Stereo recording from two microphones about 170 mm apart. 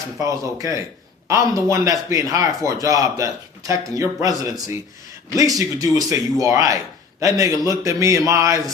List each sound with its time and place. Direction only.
0.2 s speech: 20° right (ahead or behind)